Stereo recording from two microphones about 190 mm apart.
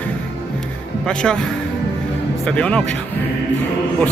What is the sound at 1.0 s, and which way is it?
Speech, 5° left (ahead or behind).